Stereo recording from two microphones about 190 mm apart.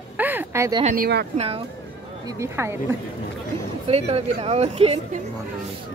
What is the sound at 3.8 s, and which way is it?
Speech, 30° right (ahead or behind).